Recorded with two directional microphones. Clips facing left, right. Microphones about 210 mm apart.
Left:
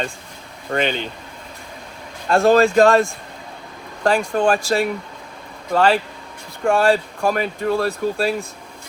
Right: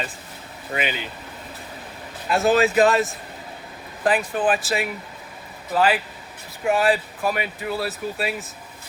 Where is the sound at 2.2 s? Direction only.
5° right (ahead or behind).